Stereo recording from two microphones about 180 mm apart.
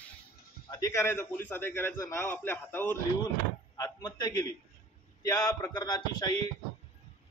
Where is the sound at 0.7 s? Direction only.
15° left (ahead or behind).